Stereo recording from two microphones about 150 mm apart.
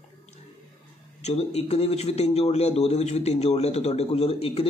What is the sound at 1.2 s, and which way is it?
A man's voice, 45° left (ahead or behind).